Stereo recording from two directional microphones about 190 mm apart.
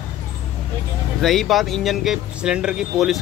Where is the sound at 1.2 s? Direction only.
Centre (ahead or behind).